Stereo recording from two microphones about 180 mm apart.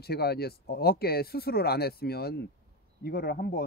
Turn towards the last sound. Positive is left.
turn(degrees=55)  # may be behind; listen again after turning